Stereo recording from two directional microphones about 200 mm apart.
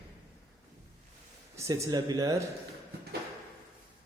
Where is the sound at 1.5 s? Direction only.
15° right (ahead or behind).